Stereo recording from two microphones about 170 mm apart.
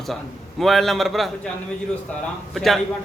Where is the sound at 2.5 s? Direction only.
Centre (ahead or behind).